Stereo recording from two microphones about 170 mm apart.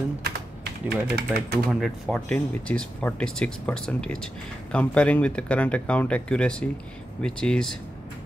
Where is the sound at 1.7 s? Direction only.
Centre (ahead or behind).